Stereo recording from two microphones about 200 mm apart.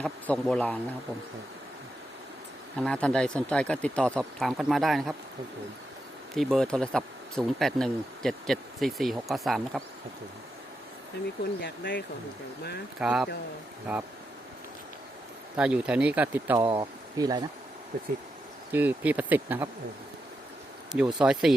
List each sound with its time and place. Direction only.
0.0 s speech: 5° left (ahead or behind)
2.8 s speech: 5° left (ahead or behind)
6.3 s speech: centre (ahead or behind)
11.6 s speech: 55° left (ahead or behind)
13.0 s speech: 5° right (ahead or behind)
15.5 s speech: 5° right (ahead or behind); by 17.4 s 20° right (ahead or behind)
17.9 s speech: 45° right (ahead or behind)
18.7 s speech: 10° right (ahead or behind)
20.9 s speech: 5° right (ahead or behind)